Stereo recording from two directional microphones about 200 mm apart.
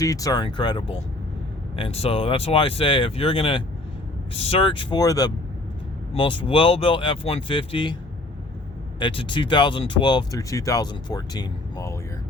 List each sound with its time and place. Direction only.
0.0 s speech: 15° left (ahead or behind)
9.0 s speech: 25° left (ahead or behind)